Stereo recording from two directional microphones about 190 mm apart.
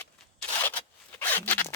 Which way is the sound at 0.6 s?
10° left (ahead or behind).